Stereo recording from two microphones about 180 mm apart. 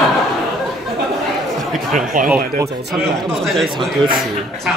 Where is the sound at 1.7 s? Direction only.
Centre (ahead or behind).